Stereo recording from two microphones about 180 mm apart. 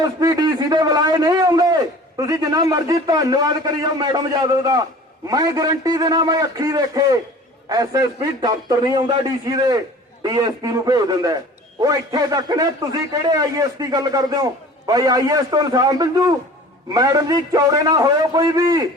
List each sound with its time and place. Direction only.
0.0 s a man's voice: 20° right (ahead or behind)